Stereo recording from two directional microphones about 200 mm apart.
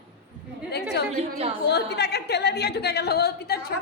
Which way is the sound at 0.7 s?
55° left (ahead or behind).